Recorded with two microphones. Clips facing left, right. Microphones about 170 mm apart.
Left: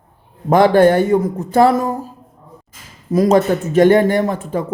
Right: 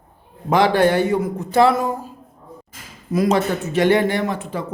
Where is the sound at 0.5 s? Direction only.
50° left (ahead or behind).